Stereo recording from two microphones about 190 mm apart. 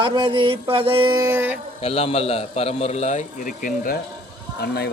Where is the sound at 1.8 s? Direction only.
30° left (ahead or behind).